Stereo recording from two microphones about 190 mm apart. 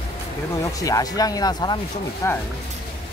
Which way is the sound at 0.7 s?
20° left (ahead or behind).